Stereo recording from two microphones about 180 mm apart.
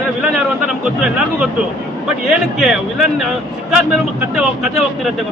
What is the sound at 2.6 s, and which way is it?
Speech, centre (ahead or behind).